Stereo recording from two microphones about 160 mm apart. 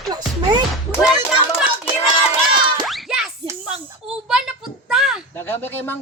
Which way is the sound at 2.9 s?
Centre (ahead or behind).